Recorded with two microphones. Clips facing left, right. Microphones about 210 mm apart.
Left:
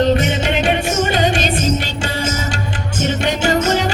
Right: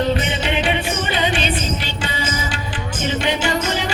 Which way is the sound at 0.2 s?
45° left (ahead or behind).